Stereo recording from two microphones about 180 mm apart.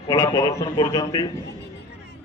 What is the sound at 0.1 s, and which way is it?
A man's voice, 20° left (ahead or behind).